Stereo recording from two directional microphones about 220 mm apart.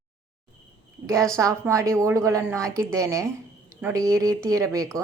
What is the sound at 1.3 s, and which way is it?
A woman's voice, 15° right (ahead or behind).